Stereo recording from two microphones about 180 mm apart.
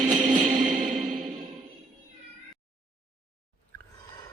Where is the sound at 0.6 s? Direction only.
45° right (ahead or behind).